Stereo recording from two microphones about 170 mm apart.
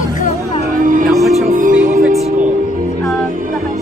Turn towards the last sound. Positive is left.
turn(degrees=-55)  # may be behind; listen again after turning